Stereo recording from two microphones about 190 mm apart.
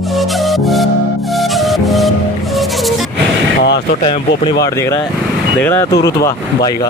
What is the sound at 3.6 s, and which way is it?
Vehicle, 60° left (ahead or behind).